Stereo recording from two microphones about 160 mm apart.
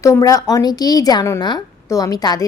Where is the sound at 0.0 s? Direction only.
20° left (ahead or behind).